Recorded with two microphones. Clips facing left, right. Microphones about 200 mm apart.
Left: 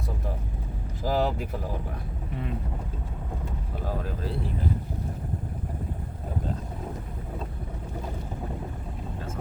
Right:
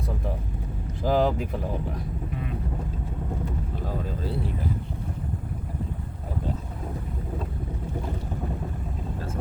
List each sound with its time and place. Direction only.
1.0 s speech: 5° left (ahead or behind)